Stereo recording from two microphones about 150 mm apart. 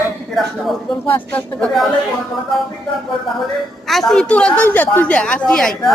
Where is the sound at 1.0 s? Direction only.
10° left (ahead or behind).